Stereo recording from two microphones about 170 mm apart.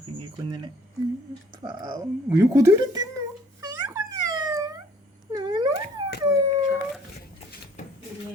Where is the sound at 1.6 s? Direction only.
25° right (ahead or behind).